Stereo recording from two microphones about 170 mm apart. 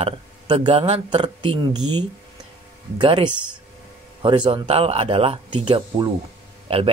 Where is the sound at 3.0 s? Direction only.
25° right (ahead or behind).